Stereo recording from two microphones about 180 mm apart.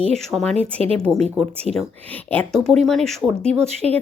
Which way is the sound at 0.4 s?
35° right (ahead or behind).